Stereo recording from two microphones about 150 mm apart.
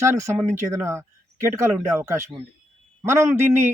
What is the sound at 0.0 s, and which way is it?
A man's voice, 20° right (ahead or behind).